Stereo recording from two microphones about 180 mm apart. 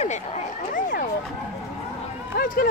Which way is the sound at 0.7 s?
45° left (ahead or behind).